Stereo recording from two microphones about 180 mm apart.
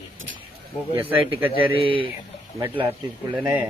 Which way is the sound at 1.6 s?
30° right (ahead or behind).